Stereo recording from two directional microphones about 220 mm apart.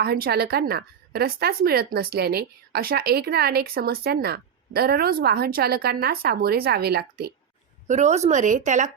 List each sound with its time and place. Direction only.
0.0 s a woman's voice: 45° right (ahead or behind)
7.9 s speech: 35° right (ahead or behind)